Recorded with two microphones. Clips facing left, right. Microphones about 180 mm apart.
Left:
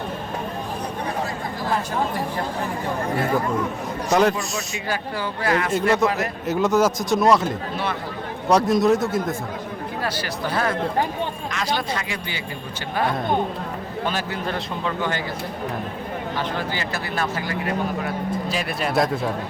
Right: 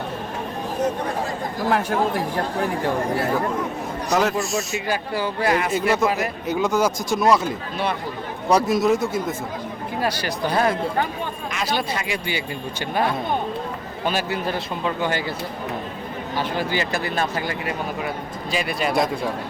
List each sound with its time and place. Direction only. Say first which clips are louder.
1.7 s speech: right 3 dB; 50° right (ahead or behind)
4.1 s speech: left 2 dB; centre (ahead or behind)
4.9 s a man's voice: even; 10° right (ahead or behind)
5.7 s speech: left 1 dB; 5° right (ahead or behind)
8.4 s speech: left 1 dB; centre (ahead or behind)
10.0 s a man's voice: right 4 dB; 15° right (ahead or behind)
14.0 s a man's voice: right 3 dB; 10° right (ahead or behind)
16.4 s a man's voice: right 5 dB; 15° right (ahead or behind)
18.5 s speech: right 3 dB; centre (ahead or behind)